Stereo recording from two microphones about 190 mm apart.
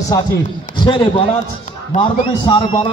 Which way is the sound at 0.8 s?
25° left (ahead or behind).